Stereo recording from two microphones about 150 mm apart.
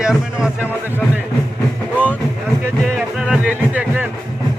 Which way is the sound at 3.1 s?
5° right (ahead or behind).